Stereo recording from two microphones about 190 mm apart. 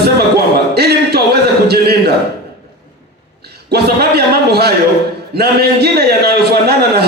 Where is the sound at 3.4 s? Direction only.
60° right (ahead or behind).